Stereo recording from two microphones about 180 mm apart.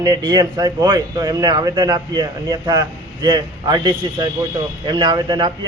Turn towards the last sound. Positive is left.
turn(degrees=-25)  # may be behind; listen again after turning